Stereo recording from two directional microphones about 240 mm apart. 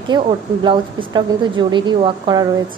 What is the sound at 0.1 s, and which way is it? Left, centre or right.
A woman's voice, centre.